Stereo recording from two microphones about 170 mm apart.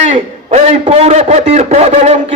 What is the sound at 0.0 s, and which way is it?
A man's voice, 40° right (ahead or behind).